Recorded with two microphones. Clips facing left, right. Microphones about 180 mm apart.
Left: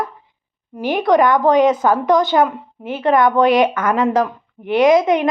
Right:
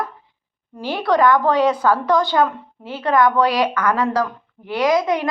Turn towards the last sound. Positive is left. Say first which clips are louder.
# left 5 dB
turn(degrees=25)  # may be behind; listen again after turning